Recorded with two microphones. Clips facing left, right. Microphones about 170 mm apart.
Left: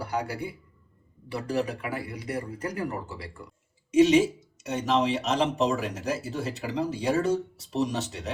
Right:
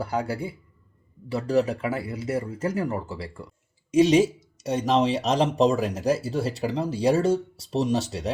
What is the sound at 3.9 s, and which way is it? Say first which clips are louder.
Speech: right 1 dB; 35° right (ahead or behind).